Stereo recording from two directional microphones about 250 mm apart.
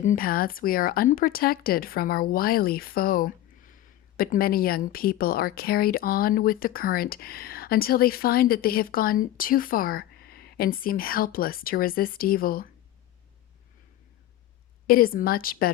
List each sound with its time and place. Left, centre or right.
0.0 s a woman's voice: left
14.8 s a woman's voice: left